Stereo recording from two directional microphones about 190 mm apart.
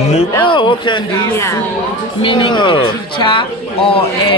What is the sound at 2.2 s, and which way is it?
Speech, 25° left (ahead or behind).